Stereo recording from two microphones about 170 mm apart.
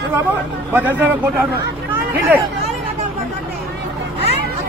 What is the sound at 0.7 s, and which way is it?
Speech, 10° right (ahead or behind).